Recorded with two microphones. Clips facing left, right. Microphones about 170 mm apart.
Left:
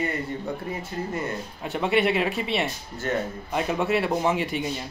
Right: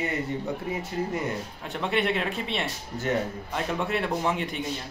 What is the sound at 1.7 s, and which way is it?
Speech, 5° left (ahead or behind).